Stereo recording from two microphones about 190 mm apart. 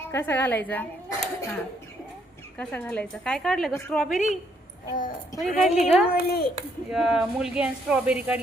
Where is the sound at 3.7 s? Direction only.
15° left (ahead or behind).